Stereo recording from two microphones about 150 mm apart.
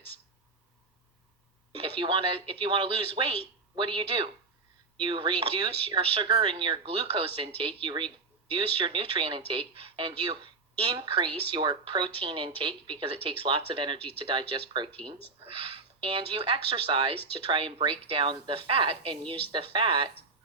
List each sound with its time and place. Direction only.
1.7 s speech: 35° right (ahead or behind)